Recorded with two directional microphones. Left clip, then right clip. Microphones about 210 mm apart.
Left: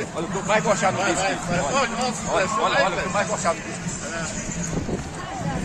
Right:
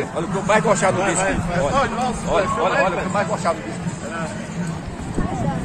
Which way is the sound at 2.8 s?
Centre (ahead or behind).